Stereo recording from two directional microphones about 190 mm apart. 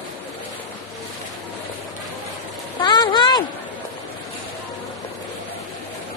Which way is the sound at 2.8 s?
25° left (ahead or behind).